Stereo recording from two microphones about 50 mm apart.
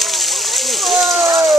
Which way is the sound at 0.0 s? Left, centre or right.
Centre.